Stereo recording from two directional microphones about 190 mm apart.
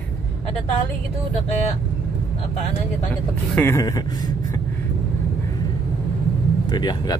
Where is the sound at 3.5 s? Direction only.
15° left (ahead or behind).